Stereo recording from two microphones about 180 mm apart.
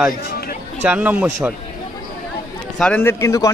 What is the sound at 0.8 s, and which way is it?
Speech, 10° right (ahead or behind).